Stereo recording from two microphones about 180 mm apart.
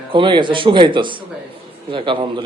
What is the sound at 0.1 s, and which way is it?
A man's voice, 25° right (ahead or behind).